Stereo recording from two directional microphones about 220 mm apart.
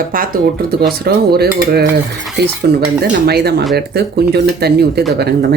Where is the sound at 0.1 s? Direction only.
40° right (ahead or behind).